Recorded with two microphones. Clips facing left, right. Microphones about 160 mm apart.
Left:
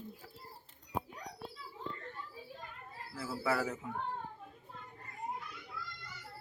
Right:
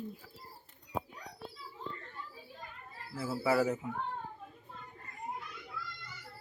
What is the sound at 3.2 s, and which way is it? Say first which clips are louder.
Speech: right 5 dB; 10° right (ahead or behind).